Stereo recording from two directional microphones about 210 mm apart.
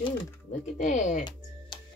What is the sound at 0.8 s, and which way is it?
Speech, 35° left (ahead or behind).